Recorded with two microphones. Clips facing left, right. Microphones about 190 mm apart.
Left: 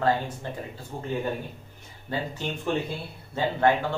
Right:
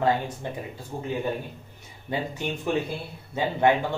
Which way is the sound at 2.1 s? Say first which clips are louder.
Right 2 dB; 10° right (ahead or behind).